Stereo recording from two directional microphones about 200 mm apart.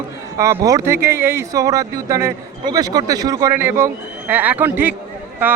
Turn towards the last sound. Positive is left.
turn(degrees=-10)  # may be behind; listen again after turning